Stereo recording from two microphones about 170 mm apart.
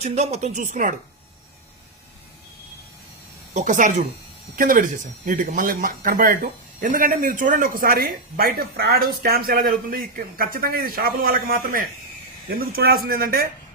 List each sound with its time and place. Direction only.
0.0 s speech: 40° right (ahead or behind)
3.5 s speech: 45° right (ahead or behind)